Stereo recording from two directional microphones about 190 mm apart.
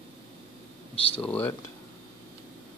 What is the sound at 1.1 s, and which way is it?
Speech, 10° left (ahead or behind).